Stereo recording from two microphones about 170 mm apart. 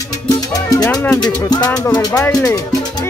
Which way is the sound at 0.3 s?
20° left (ahead or behind).